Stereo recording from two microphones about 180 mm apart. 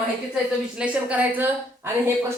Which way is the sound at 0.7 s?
5° right (ahead or behind).